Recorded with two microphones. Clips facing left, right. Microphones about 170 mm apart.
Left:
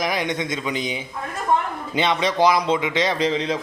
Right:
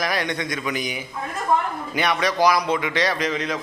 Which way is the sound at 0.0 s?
20° left (ahead or behind).